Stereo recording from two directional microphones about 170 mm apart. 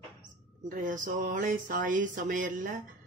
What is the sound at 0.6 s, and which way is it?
Speech, 50° right (ahead or behind).